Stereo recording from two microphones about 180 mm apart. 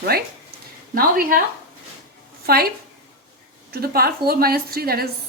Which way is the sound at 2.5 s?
55° right (ahead or behind).